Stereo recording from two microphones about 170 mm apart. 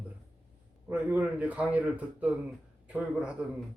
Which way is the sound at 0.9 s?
10° right (ahead or behind).